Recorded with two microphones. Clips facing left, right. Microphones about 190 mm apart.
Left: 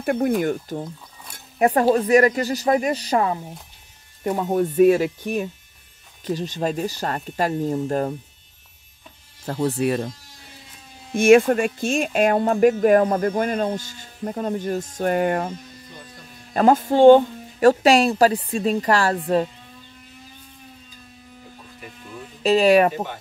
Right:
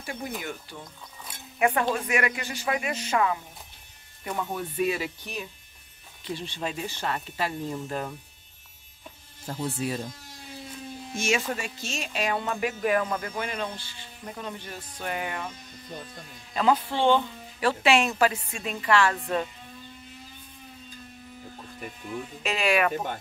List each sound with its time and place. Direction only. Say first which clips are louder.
0.0 s speech: left 14 dB; 55° left (ahead or behind)
0.4 s speech: left 14 dB; 45° left (ahead or behind)
9.5 s speech: left 9 dB; 70° left (ahead or behind)
11.1 s speech: left 15 dB; 55° left (ahead or behind)
16.5 s speech: left 8 dB; 45° left (ahead or behind)
22.4 s speech: left 10 dB; 35° left (ahead or behind)